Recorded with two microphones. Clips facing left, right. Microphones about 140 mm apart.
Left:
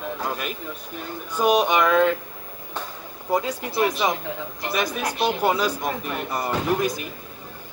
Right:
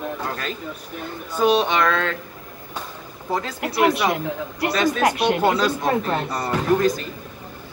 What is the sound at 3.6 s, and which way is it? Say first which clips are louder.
Speech: right 4 dB; 80° right.